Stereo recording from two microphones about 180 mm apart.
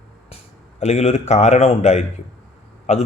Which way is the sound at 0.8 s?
35° left (ahead or behind).